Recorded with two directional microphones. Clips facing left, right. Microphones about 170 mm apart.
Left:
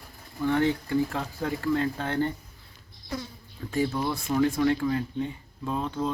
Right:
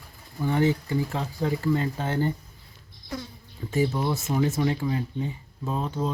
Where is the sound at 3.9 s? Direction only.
20° right (ahead or behind).